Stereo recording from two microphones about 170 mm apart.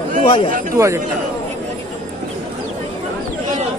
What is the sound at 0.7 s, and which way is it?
Speech, 15° right (ahead or behind).